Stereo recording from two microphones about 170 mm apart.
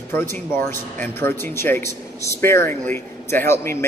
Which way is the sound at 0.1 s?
15° left (ahead or behind).